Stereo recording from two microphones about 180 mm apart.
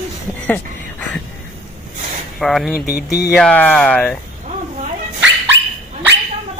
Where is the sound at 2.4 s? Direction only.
Centre (ahead or behind).